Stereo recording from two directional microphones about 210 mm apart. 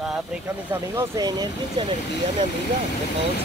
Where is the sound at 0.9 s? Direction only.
15° right (ahead or behind).